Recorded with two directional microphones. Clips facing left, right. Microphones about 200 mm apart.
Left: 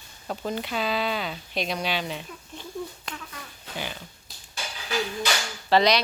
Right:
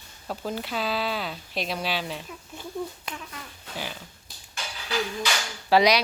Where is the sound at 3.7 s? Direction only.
Centre (ahead or behind).